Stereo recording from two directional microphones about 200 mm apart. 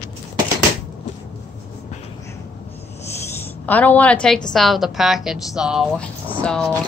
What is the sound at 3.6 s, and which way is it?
A woman's voice, 10° left (ahead or behind).